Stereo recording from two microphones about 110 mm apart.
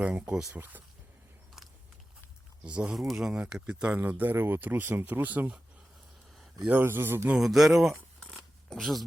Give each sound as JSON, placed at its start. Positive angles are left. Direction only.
{"t": 0.0, "sound": "speech", "side_deg": -10}
{"t": 2.6, "sound": "speech", "side_deg": -10}
{"t": 6.7, "sound": "speech", "side_deg": -20}
{"t": 7.3, "sound": "speech", "side_deg": -5}
{"t": 8.3, "sound": "zipper", "side_deg": 0}